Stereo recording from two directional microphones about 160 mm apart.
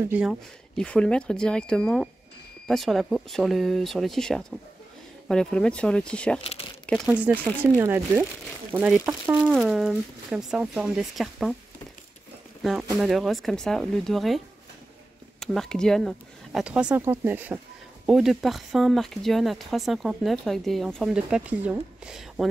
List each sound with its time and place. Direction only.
0.0 s speech: 5° right (ahead or behind)
6.4 s speech: 35° left (ahead or behind)
7.1 s speech: 10° right (ahead or behind)
12.9 s speech: centre (ahead or behind)
15.4 s speech: centre (ahead or behind)